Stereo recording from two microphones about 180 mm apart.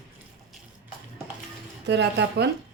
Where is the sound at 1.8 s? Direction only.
75° right (ahead or behind).